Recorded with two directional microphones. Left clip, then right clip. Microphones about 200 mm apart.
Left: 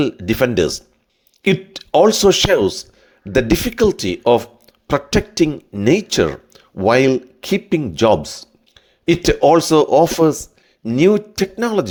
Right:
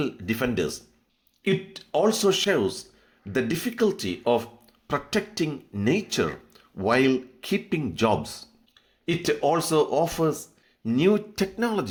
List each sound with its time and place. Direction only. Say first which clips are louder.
0.0 s speech: left 11 dB; 40° left (ahead or behind)